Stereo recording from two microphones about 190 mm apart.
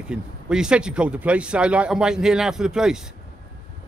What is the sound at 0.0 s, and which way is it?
Speech, 5° right (ahead or behind).